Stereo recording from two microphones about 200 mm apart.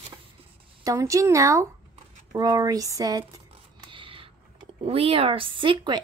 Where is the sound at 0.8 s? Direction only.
15° right (ahead or behind).